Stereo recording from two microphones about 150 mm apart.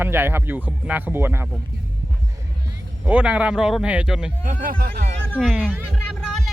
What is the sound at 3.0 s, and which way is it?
Speech, 10° right (ahead or behind).